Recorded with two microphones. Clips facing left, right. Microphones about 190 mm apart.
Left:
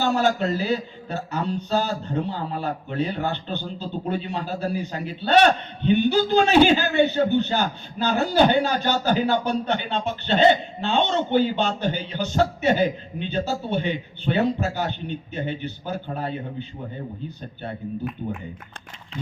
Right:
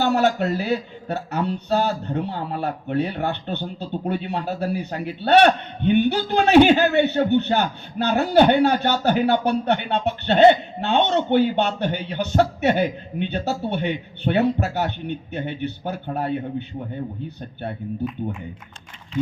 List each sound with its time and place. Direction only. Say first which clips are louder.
0.0 s speech: right 2 dB; 60° right (ahead or behind)